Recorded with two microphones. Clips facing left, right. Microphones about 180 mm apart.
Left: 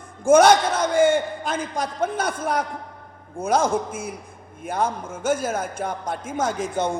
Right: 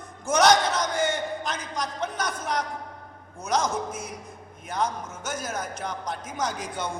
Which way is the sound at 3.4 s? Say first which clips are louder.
Left 6 dB; 55° left (ahead or behind).